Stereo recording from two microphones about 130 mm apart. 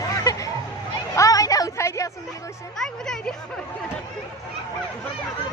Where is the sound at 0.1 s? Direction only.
25° left (ahead or behind).